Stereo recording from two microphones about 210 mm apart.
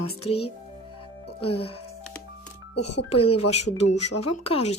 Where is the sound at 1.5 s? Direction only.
25° left (ahead or behind).